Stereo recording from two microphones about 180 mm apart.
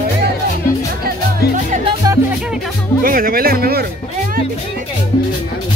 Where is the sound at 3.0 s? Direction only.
55° right (ahead or behind).